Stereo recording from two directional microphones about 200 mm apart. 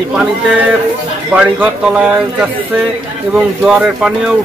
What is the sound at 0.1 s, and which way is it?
A man's voice, 5° right (ahead or behind).